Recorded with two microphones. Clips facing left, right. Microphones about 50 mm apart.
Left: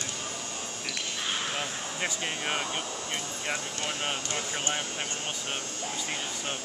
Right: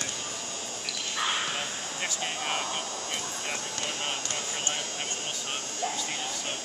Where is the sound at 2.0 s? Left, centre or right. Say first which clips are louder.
Left 1 dB; centre.